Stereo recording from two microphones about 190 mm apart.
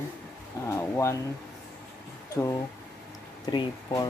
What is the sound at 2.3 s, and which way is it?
Speech, 20° left (ahead or behind).